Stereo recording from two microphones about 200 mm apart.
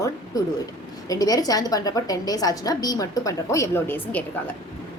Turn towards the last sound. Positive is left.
turn(degrees=10)  # may be behind; listen again after turning